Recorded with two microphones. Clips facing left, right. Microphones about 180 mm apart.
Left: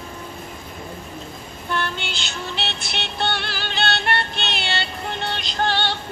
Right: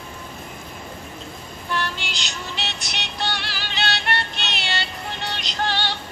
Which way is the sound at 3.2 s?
50° left (ahead or behind).